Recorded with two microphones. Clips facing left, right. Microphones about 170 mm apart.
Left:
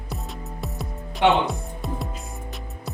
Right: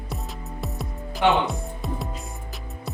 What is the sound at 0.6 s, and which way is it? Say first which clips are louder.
Music: right 1 dB; centre (ahead or behind).